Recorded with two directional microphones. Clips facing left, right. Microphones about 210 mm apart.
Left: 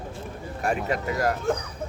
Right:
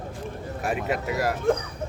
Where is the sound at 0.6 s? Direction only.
5° right (ahead or behind).